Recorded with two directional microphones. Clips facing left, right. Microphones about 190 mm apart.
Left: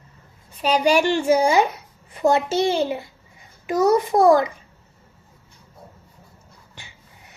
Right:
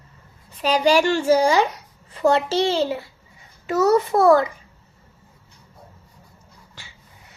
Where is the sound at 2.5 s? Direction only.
15° left (ahead or behind).